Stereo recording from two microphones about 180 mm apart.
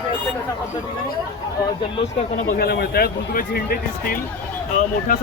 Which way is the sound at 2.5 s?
60° left (ahead or behind).